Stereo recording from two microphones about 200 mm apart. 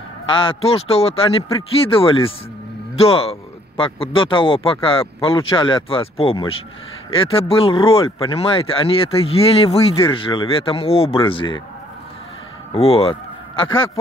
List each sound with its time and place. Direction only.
0.3 s speech: 25° left (ahead or behind)
12.7 s speech: 30° left (ahead or behind)